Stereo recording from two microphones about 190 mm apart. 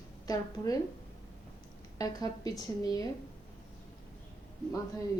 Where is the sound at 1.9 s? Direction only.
20° left (ahead or behind).